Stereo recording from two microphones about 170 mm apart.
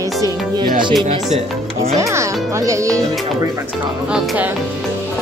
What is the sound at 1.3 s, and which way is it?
Speech, 35° right (ahead or behind).